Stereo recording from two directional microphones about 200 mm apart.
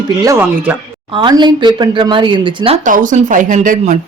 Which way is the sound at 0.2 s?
15° right (ahead or behind).